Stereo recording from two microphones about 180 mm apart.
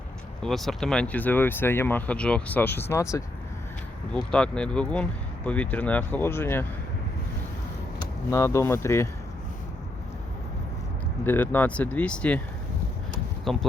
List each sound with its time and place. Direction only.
0.4 s speech: centre (ahead or behind)
4.1 s speech: 5° left (ahead or behind)
8.3 s speech: 15° left (ahead or behind)
11.3 s speech: 10° left (ahead or behind)
13.4 s speech: centre (ahead or behind)